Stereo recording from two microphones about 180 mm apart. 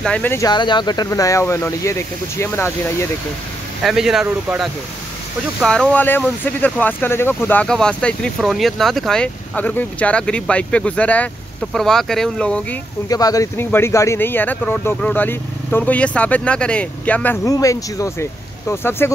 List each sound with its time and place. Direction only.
0.0 s speech: 10° left (ahead or behind)
0.5 s speech: 25° left (ahead or behind)
3.8 s speech: 5° right (ahead or behind)
13.1 s speech: 20° left (ahead or behind)